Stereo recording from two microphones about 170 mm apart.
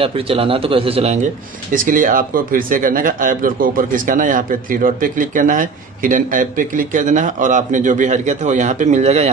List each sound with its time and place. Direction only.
0.0 s speech: 35° right (ahead or behind)
1.7 s speech: 50° right (ahead or behind)